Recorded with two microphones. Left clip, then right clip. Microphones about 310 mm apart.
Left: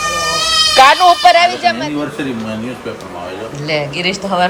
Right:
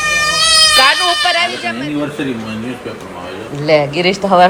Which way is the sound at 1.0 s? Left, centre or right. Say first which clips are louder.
Left 5 dB; centre.